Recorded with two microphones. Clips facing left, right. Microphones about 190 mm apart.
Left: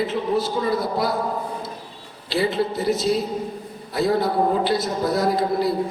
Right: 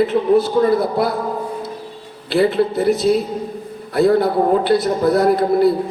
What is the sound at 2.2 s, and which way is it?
A man's voice, 55° right (ahead or behind).